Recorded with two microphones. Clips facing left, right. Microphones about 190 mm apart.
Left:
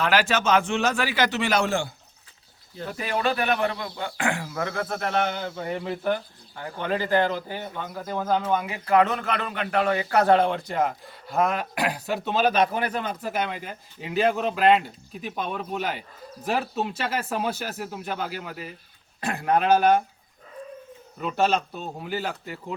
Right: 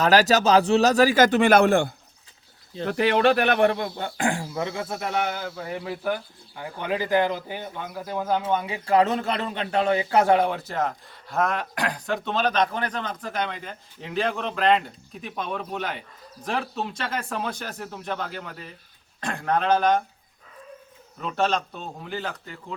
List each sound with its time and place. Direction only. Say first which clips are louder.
0.0 s a man's voice: right 4 dB; 40° right (ahead or behind); by 1.9 s 55° right (ahead or behind)
2.8 s speech: right 7 dB; 70° right (ahead or behind); by 4.1 s 45° right (ahead or behind)
4.2 s speech: right 2 dB; 30° right (ahead or behind); by 8.4 s 5° right (ahead or behind)
8.4 s a man's voice: even; 25° right (ahead or behind)
10.2 s speech: left 1 dB; 10° right (ahead or behind); by 20.0 s 10° left (ahead or behind)
21.2 s speech: left 1 dB; 5° left (ahead or behind)